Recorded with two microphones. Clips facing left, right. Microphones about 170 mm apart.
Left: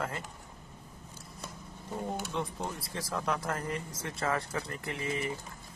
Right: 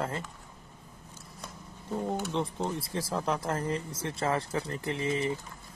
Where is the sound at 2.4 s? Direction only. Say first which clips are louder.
Right 4 dB; 30° right (ahead or behind).